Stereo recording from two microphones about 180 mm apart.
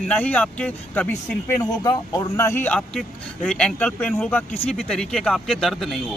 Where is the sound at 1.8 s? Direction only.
20° left (ahead or behind).